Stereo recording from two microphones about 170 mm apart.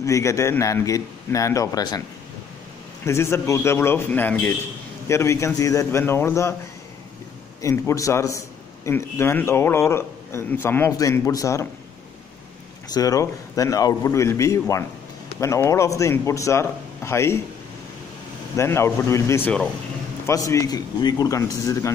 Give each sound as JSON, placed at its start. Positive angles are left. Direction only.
{"t": 0.0, "sound": "a man's voice", "side_deg": 20}
{"t": 3.1, "sound": "a man's voice", "side_deg": 15}
{"t": 7.6, "sound": "a man's voice", "side_deg": 15}
{"t": 12.9, "sound": "a man's voice", "side_deg": 20}
{"t": 18.6, "sound": "a man's voice", "side_deg": 15}
{"t": 20.2, "sound": "a man's voice", "side_deg": 20}